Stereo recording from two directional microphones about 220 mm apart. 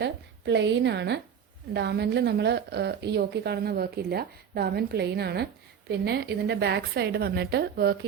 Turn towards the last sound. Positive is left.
turn(degrees=-45)  # may be behind; listen again after turning